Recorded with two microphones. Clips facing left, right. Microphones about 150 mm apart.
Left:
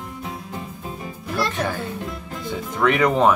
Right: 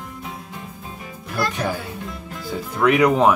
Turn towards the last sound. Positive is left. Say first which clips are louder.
# right 2 dB
turn(degrees=-5)  # may be behind; listen again after turning